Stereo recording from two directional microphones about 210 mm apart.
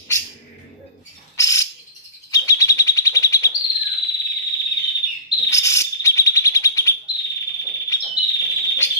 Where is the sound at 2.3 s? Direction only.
15° left (ahead or behind).